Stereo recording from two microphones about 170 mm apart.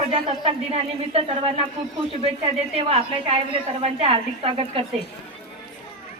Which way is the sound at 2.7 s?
35° right (ahead or behind).